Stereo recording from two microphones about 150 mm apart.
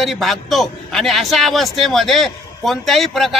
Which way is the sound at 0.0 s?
Centre (ahead or behind).